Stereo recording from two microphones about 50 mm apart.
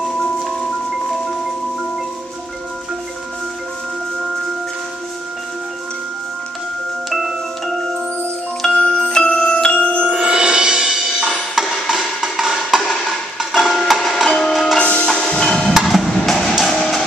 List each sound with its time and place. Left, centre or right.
7.1 s music: centre
8.7 s marimba: centre
9.7 s music: left
10.0 s music: right; by 14.8 s centre
14.8 s music: left
15.4 s percussion: centre
15.7 s percussion: centre
16.1 s music: centre